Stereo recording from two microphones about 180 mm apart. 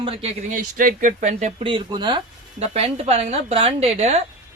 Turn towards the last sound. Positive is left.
turn(degrees=-35)  # may be behind; listen again after turning